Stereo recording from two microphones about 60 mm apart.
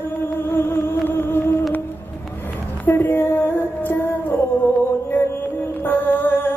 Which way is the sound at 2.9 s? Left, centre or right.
Left.